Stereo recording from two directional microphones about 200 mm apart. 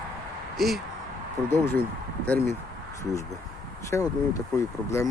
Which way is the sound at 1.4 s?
10° left (ahead or behind).